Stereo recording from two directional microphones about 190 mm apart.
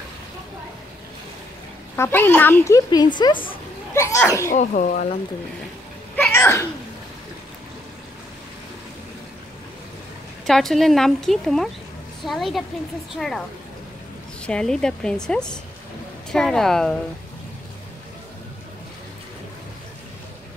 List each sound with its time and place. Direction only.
2.0 s speech: 10° left (ahead or behind)
3.9 s speech: 15° left (ahead or behind)
4.5 s speech: 45° left (ahead or behind)
6.1 s sneeze: 10° left (ahead or behind)
10.4 s speech: centre (ahead or behind)
14.4 s speech: 5° left (ahead or behind)